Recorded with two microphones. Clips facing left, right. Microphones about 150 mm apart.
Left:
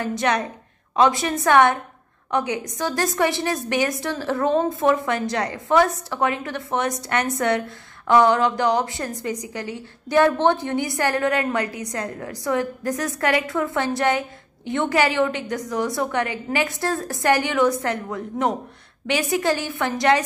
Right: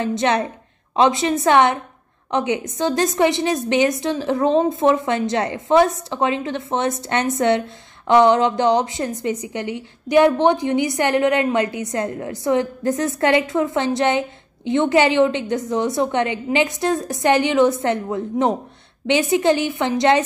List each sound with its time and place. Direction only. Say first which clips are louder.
0.0 s a woman's voice: right 3 dB; 25° right (ahead or behind)